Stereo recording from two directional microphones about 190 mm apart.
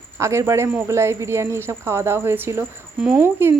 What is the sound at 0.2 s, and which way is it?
A woman's voice, 15° right (ahead or behind).